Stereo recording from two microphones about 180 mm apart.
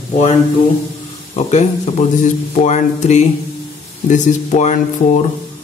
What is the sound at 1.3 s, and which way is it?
Speech, 40° left (ahead or behind).